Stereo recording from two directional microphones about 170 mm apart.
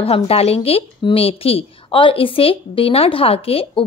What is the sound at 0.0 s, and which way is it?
Speech, 35° left (ahead or behind).